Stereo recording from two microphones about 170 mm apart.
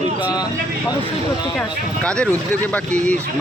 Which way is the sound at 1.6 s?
5° left (ahead or behind).